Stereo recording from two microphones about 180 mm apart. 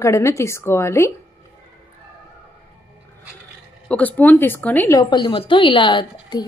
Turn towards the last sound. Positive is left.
turn(degrees=25)  # may be behind; listen again after turning